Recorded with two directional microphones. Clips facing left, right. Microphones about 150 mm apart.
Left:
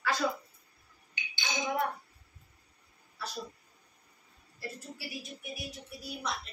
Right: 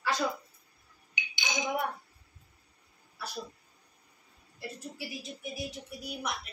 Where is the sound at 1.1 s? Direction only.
15° right (ahead or behind).